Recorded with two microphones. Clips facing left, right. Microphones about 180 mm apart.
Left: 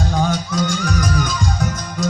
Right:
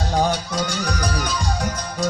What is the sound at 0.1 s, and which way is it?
Music, 35° right (ahead or behind).